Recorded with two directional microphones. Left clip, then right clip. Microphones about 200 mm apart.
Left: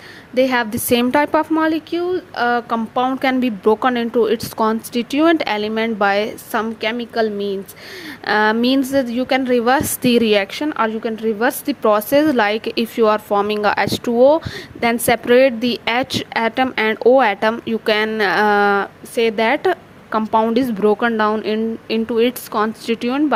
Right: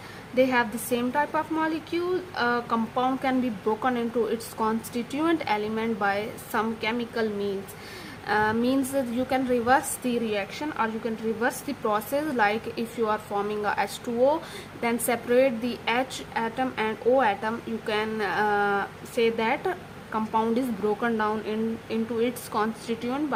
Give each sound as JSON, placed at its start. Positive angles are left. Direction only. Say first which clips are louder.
{"t": 0.3, "sound": "a woman's voice", "louder": "left 6 dB", "side_deg": 40}